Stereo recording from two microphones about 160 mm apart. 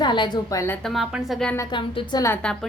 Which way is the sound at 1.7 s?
25° left (ahead or behind).